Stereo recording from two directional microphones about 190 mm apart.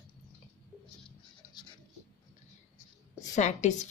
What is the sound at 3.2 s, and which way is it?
Speech, 40° left (ahead or behind).